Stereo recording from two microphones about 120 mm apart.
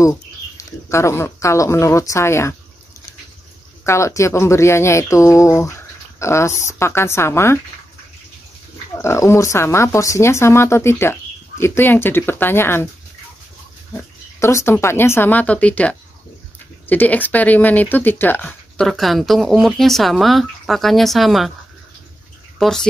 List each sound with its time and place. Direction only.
0.0 s speech: 25° left (ahead or behind)
3.8 s speech: 25° left (ahead or behind)
8.9 s speech: 25° left (ahead or behind)
13.9 s speech: 25° left (ahead or behind)
18.9 s speech: centre (ahead or behind)
22.6 s speech: 5° left (ahead or behind)